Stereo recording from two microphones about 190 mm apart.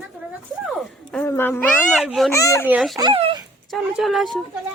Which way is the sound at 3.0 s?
25° right (ahead or behind).